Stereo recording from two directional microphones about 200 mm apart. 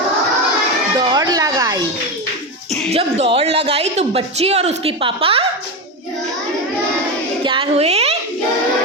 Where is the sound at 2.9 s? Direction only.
30° right (ahead or behind).